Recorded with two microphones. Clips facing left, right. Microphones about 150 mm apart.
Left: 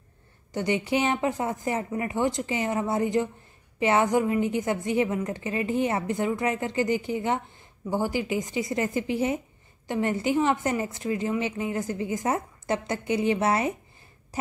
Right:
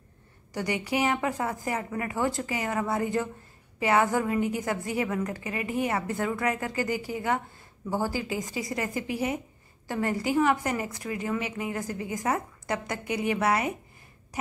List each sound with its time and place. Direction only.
0.5 s a woman's voice: 25° left (ahead or behind)